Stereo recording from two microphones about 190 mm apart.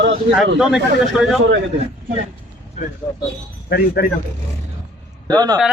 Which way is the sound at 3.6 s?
55° left (ahead or behind).